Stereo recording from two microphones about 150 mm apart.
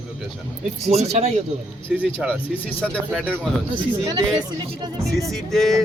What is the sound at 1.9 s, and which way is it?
Speech, 5° right (ahead or behind).